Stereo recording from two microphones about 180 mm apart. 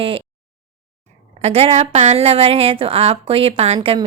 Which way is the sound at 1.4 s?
35° right (ahead or behind).